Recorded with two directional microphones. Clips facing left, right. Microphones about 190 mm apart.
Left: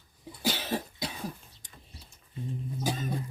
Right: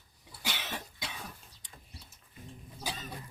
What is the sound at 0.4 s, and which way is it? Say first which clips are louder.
Cough: left 9 dB; 35° left (ahead or behind).